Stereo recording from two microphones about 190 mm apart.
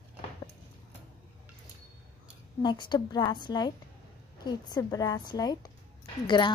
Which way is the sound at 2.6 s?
25° left (ahead or behind).